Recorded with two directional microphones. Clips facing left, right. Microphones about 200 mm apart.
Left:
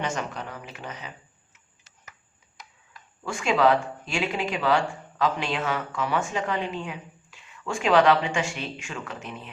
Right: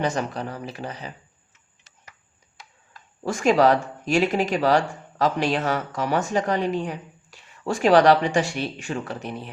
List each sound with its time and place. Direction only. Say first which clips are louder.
0.0 s speech: right 5 dB; 35° right (ahead or behind)
3.2 s speech: right 4 dB; 40° right (ahead or behind)